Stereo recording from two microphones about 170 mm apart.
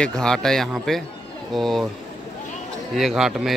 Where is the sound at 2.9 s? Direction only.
Centre (ahead or behind).